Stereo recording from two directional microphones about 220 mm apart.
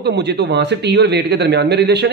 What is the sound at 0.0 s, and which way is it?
A man's voice, 50° right (ahead or behind).